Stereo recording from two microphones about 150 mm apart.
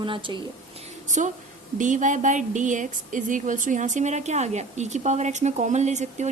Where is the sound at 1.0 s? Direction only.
55° right (ahead or behind).